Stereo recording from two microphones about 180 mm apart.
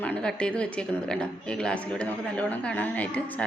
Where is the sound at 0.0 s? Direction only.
5° left (ahead or behind).